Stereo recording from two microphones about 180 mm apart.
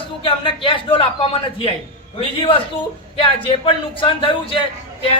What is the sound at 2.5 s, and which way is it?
A man's voice, 30° left (ahead or behind).